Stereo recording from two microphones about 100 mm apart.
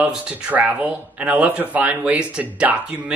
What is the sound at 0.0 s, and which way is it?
Speech, 10° right (ahead or behind).